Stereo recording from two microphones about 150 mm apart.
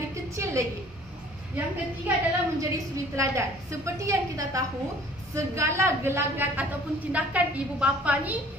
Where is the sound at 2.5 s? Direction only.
20° right (ahead or behind).